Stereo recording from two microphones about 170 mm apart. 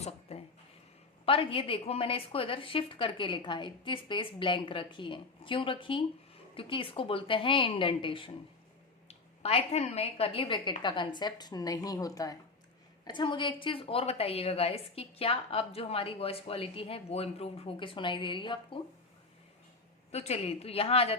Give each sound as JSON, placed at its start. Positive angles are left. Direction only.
{"t": 0.0, "sound": "a sound", "side_deg": 40}
{"t": 1.2, "sound": "a woman's voice", "side_deg": 30}
{"t": 20.1, "sound": "a woman's voice", "side_deg": 40}